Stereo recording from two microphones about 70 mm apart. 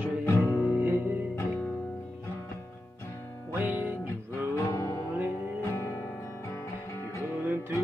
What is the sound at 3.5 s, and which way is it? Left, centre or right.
Music, right.